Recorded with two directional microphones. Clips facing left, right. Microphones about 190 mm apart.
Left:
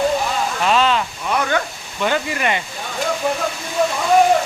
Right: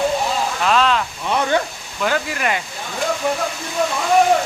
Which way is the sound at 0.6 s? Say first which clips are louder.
Left 1 dB; centre (ahead or behind).